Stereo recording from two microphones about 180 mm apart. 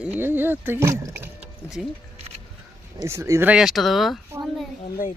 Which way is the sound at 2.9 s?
15° right (ahead or behind).